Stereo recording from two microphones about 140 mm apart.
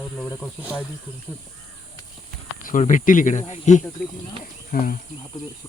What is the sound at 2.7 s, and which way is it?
Speech, 65° left (ahead or behind).